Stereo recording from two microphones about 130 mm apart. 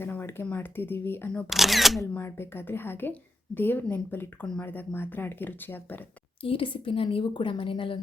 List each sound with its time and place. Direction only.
0.0 s a woman's voice: 20° left (ahead or behind)
1.5 s speech: centre (ahead or behind)
2.0 s a woman's voice: 20° left (ahead or behind)
6.4 s a woman's voice: 40° left (ahead or behind)